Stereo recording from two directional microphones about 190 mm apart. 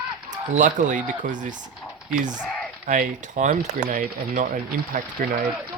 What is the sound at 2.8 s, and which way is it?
Speech, 40° right (ahead or behind).